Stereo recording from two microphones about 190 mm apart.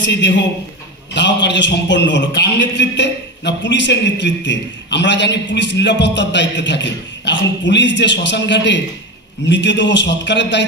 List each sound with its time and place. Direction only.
0.0 s a man's voice: 70° left (ahead or behind)